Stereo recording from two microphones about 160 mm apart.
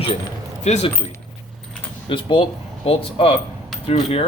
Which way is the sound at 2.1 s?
30° left (ahead or behind).